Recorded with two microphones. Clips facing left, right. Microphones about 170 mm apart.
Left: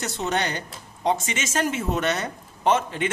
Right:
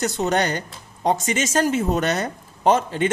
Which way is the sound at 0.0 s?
40° right (ahead or behind).